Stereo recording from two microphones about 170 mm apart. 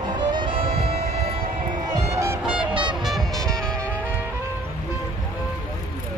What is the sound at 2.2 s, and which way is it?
Music, 10° right (ahead or behind).